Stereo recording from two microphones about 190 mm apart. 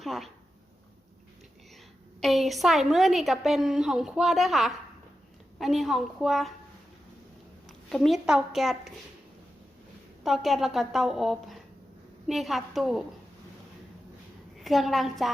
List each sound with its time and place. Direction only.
0.0 s a sound: centre (ahead or behind)
2.2 s a woman's voice: centre (ahead or behind)
7.7 s a woman's voice: centre (ahead or behind)
10.2 s a woman's voice: centre (ahead or behind)
14.6 s a woman's voice: centre (ahead or behind)